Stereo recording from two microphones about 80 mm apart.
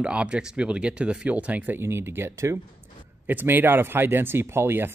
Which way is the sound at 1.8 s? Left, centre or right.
Right.